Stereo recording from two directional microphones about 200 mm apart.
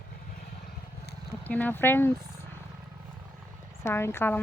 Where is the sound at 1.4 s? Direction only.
10° left (ahead or behind).